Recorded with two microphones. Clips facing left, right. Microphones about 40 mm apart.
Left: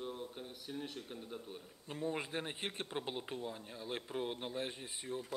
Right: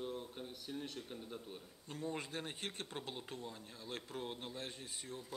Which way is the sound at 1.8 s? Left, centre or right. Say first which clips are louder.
Left 4 dB; left.